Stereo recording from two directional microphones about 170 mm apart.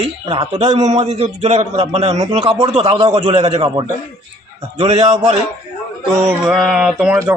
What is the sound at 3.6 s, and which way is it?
Speech, 25° right (ahead or behind).